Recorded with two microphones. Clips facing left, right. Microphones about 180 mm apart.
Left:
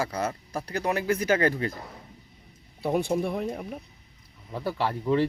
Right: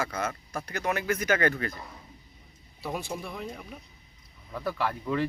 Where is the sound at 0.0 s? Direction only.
35° left (ahead or behind).